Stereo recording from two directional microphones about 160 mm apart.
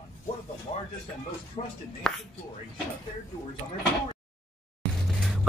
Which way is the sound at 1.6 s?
40° left (ahead or behind).